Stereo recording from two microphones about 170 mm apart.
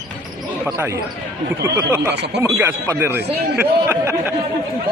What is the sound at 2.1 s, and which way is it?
Speech, 85° right.